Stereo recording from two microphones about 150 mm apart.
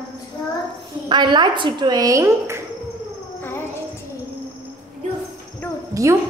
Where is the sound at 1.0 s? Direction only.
30° right (ahead or behind).